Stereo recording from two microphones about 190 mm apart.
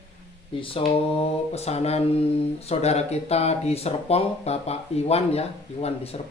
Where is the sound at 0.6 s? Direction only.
30° left (ahead or behind).